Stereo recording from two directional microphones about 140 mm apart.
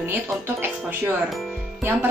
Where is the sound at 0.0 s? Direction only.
15° right (ahead or behind).